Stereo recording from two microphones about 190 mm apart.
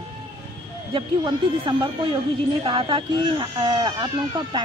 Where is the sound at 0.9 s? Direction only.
25° right (ahead or behind).